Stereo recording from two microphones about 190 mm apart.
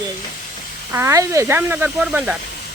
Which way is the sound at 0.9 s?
15° right (ahead or behind).